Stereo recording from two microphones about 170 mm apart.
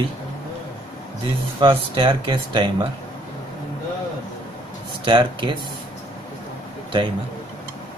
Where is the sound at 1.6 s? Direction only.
30° right (ahead or behind).